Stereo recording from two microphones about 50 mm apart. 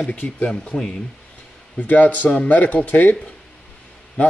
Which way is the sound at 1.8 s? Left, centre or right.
Left.